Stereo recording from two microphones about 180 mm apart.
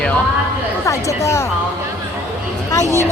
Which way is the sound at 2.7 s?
15° left (ahead or behind).